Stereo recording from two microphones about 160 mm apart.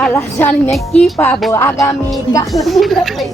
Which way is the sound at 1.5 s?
15° left (ahead or behind).